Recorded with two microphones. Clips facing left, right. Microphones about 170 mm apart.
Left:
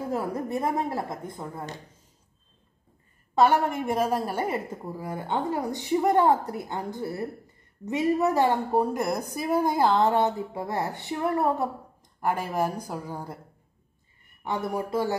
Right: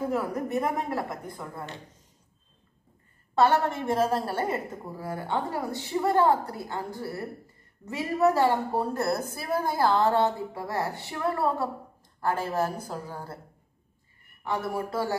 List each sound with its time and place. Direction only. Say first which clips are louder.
0.1 s a woman's voice: right 1 dB; 30° left (ahead or behind)
3.3 s a woman's voice: left 1 dB; 10° left (ahead or behind)
14.4 s a woman's voice: left 1 dB; 20° left (ahead or behind)